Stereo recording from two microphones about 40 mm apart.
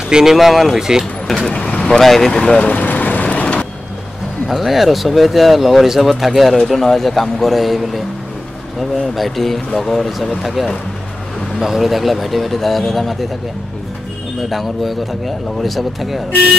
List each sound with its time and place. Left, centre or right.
0.1 s speech: centre
0.7 s speech: centre
1.2 s speech: centre
1.5 s vehicle: left
1.9 s speech: centre
2.3 s speech: left
2.6 s vehicle: left
3.3 s vehicle: left
4.5 s speech: centre
9.1 s speech: centre
14.5 s speech: centre